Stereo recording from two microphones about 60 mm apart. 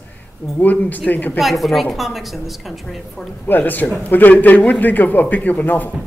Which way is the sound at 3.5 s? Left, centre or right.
Left.